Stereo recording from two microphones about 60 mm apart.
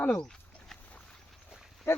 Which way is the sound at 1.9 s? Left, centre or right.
Left.